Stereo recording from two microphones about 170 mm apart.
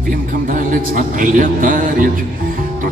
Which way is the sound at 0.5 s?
50° right (ahead or behind).